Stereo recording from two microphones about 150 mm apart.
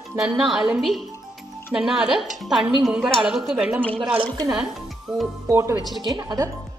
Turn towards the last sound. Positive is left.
turn(degrees=-25)  # may be behind; listen again after turning